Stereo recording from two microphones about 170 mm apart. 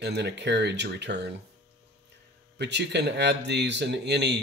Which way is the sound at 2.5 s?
90° right.